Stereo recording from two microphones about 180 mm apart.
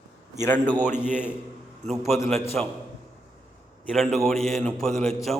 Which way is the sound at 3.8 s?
Centre (ahead or behind).